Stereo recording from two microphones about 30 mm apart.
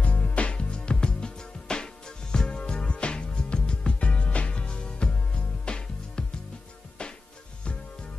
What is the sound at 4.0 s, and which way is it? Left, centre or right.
Music, left.